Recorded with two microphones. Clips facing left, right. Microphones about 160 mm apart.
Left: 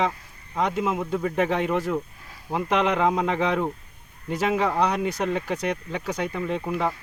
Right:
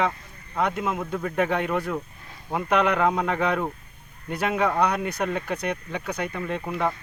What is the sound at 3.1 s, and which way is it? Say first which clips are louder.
Speech: left 1 dB; 20° left (ahead or behind).